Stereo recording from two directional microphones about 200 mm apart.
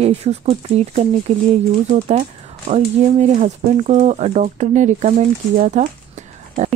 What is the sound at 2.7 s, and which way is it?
Speech, 35° right (ahead or behind).